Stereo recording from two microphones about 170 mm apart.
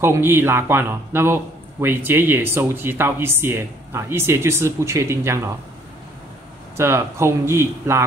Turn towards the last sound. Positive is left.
turn(degrees=-15)  # may be behind; listen again after turning